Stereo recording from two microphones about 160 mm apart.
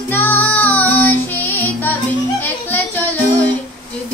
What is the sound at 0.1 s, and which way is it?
Music, 10° left (ahead or behind).